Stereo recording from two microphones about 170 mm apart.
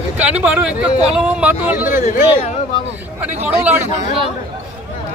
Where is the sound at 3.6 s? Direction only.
10° right (ahead or behind).